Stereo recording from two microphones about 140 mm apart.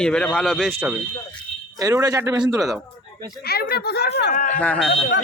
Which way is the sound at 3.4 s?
90° left.